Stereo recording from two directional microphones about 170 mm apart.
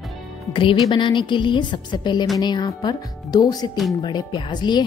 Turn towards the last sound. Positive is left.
turn(degrees=25)  # may be behind; listen again after turning